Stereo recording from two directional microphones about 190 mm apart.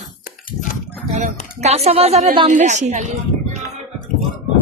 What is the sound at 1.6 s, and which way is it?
Speech, 35° right (ahead or behind).